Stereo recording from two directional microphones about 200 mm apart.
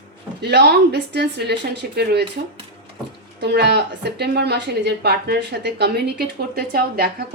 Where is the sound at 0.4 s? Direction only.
55° right (ahead or behind).